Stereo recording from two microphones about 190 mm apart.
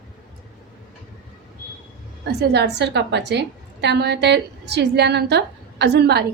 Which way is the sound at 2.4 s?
60° right (ahead or behind).